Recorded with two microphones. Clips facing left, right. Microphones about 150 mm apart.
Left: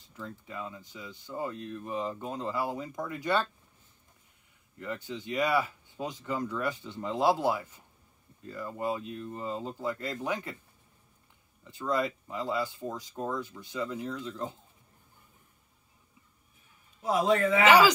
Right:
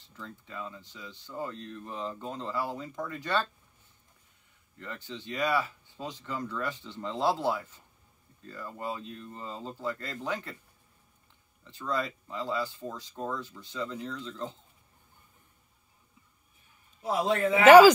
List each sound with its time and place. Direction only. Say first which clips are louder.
0.1 s speech: left 2 dB; 10° left (ahead or behind)
4.7 s speech: left 4 dB; 10° left (ahead or behind)
11.6 s speech: left 3 dB; 10° left (ahead or behind)
17.6 s speech: right 7 dB; 50° right (ahead or behind)